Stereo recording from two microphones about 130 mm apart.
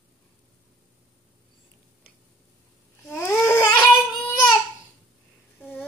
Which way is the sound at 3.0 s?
15° left (ahead or behind).